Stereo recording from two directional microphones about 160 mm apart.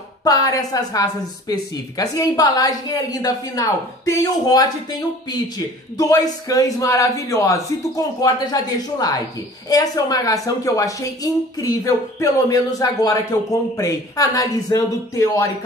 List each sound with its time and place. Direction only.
0.2 s a woman's voice: 20° left (ahead or behind)
5.9 s a woman's voice: 25° left (ahead or behind)